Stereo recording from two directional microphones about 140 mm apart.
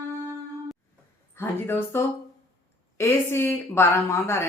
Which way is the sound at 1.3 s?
15° left (ahead or behind).